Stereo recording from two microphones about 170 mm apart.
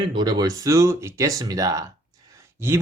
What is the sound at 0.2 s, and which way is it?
Speech, 25° right (ahead or behind).